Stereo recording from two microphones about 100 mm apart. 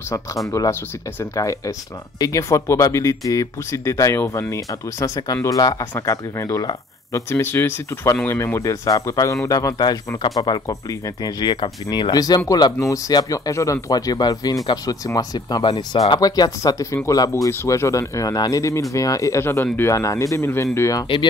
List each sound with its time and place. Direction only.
0.5 s speech: 30° left (ahead or behind)
15.6 s speech: 60° left (ahead or behind)
16.2 s speech: 40° left (ahead or behind)